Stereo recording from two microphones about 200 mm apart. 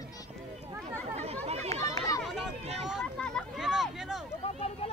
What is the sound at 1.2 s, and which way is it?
Chatter, 30° right (ahead or behind).